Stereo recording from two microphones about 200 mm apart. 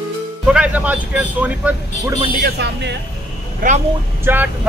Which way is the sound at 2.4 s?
60° right (ahead or behind).